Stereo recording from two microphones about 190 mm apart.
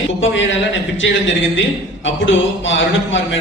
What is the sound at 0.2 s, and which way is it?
A man's voice, 80° left.